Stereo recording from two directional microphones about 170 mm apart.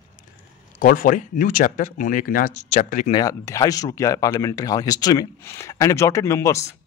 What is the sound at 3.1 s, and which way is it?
A man's voice, 20° left (ahead or behind).